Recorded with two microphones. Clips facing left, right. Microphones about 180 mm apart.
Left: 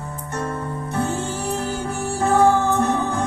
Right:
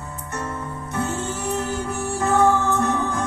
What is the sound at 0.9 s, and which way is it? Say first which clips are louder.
Music: left 2 dB; 30° left (ahead or behind).